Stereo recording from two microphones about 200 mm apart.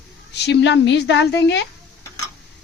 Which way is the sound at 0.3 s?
60° left (ahead or behind).